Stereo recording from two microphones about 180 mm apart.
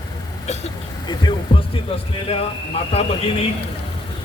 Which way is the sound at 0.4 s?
35° left (ahead or behind).